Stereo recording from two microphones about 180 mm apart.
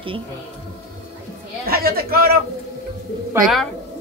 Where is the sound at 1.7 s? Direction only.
55° right (ahead or behind).